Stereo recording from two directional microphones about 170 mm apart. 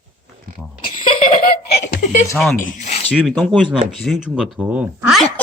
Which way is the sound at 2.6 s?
45° left (ahead or behind).